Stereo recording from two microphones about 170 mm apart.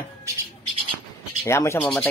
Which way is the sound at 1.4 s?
15° left (ahead or behind).